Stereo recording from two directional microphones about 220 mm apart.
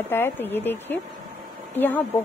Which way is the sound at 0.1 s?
10° left (ahead or behind).